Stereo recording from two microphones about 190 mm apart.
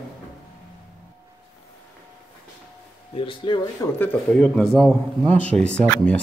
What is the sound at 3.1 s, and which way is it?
Speech, 25° left (ahead or behind).